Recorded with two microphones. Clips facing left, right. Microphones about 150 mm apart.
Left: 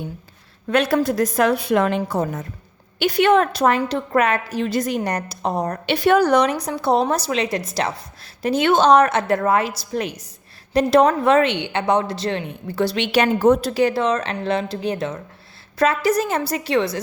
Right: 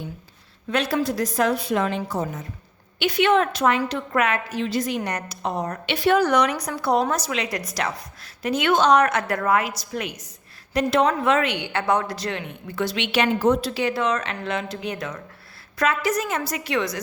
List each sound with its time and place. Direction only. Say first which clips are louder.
0.7 s a woman's voice: left 5 dB; 55° left (ahead or behind)
3.0 s a woman's voice: left 3 dB; 40° left (ahead or behind)
4.6 s a woman's voice: left 3 dB; 45° left (ahead or behind)
11.5 s a woman's voice: left 3 dB; 20° left (ahead or behind)